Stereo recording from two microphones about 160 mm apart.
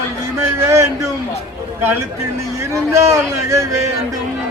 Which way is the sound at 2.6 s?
20° right (ahead or behind).